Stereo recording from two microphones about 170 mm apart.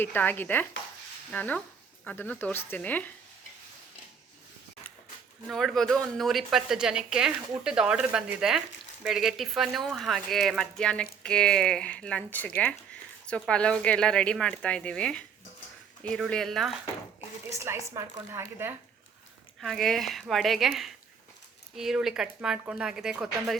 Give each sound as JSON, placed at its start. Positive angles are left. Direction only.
{"t": 0.0, "sound": "speech", "side_deg": 10}
{"t": 5.5, "sound": "speech", "side_deg": 0}
{"t": 17.5, "sound": "a woman's voice", "side_deg": -15}
{"t": 19.6, "sound": "speech", "side_deg": 0}